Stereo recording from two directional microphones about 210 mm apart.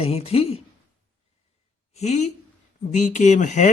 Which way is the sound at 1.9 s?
30° left (ahead or behind).